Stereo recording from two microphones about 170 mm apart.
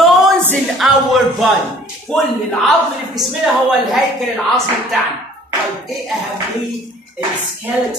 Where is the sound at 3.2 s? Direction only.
Centre (ahead or behind).